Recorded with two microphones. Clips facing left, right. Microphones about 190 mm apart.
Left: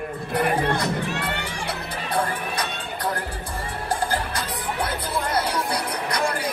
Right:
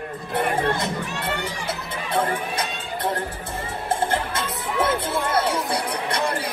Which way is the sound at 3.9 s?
25° right (ahead or behind).